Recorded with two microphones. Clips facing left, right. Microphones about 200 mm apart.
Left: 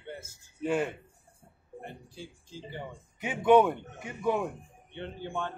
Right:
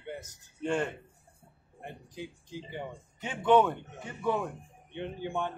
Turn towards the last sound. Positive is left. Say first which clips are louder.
# right 2 dB
turn(degrees=-15)  # may be behind; listen again after turning